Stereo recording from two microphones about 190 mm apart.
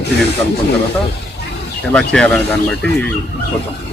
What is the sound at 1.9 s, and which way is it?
Speech, 5° left (ahead or behind).